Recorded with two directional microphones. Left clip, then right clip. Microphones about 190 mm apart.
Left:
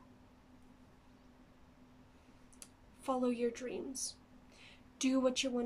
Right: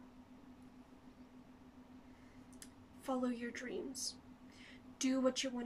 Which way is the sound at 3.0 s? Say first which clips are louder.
Left 6 dB; 15° left (ahead or behind).